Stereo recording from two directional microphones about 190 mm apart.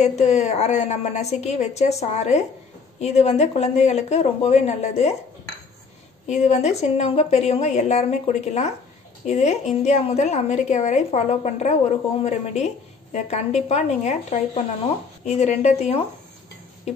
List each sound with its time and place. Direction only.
0.0 s a woman's voice: 35° left (ahead or behind)
6.3 s a woman's voice: 35° left (ahead or behind)